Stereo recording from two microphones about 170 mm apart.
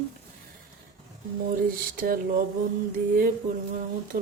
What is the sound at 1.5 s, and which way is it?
Speech, 60° right (ahead or behind).